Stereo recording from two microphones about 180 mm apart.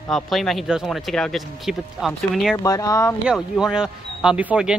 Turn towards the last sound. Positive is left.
turn(degrees=-5)  # may be behind; listen again after turning